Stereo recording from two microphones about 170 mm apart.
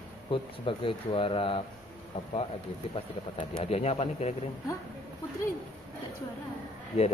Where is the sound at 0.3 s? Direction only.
30° left (ahead or behind).